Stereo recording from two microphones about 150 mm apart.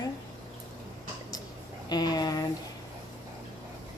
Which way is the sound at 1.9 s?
25° left (ahead or behind).